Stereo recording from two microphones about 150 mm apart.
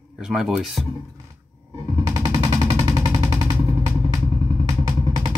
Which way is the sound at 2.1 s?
25° right (ahead or behind).